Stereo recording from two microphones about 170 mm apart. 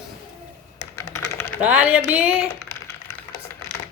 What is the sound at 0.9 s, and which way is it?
Typing, 15° left (ahead or behind).